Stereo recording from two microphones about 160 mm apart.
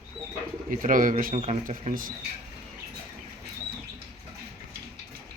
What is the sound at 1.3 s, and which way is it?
Speech, 45° right (ahead or behind).